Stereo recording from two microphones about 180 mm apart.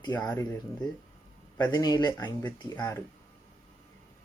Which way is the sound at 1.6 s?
25° left (ahead or behind).